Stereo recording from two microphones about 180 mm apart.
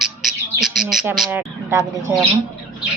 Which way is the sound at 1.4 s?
15° right (ahead or behind).